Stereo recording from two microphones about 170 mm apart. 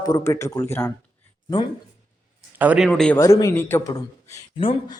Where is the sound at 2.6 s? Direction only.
10° right (ahead or behind).